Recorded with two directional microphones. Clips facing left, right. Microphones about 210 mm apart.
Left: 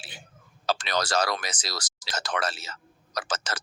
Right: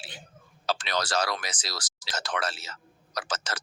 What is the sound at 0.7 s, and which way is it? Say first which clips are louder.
Speech: left 2 dB; 45° left (ahead or behind).